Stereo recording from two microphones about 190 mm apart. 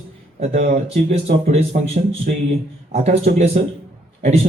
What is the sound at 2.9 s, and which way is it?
Speech, 35° right (ahead or behind).